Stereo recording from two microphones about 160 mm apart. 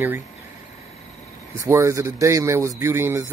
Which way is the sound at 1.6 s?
20° right (ahead or behind).